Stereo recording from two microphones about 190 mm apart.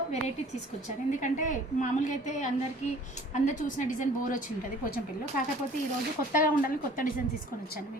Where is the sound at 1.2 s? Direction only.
40° left (ahead or behind).